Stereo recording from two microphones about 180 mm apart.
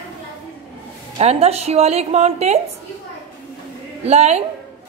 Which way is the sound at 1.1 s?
35° right (ahead or behind).